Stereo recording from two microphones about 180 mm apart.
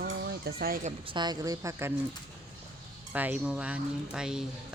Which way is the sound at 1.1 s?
25° right (ahead or behind).